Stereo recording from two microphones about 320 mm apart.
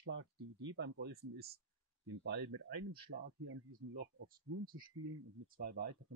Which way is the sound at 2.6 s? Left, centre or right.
Right.